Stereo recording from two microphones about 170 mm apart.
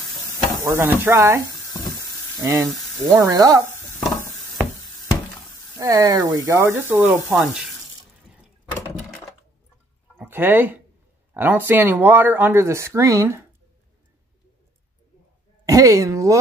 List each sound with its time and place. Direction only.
0.3 s speech: 15° right (ahead or behind)
1.7 s water tap: 20° left (ahead or behind)
2.3 s speech: 20° right (ahead or behind)
5.8 s speech: 20° right (ahead or behind)
7.2 s speech: centre (ahead or behind)
10.1 s speech: 10° right (ahead or behind)
15.6 s a sound: 20° right (ahead or behind)